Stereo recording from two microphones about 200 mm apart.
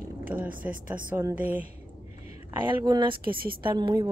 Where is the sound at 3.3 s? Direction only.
45° right (ahead or behind).